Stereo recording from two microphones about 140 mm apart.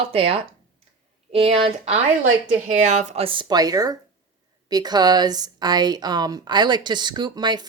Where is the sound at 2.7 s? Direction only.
60° right (ahead or behind).